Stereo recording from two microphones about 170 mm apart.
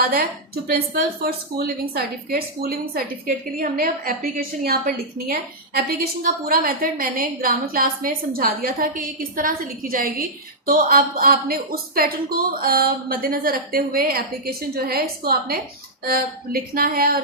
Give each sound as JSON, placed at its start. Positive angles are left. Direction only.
{"t": 0.1, "sound": "speech", "side_deg": -60}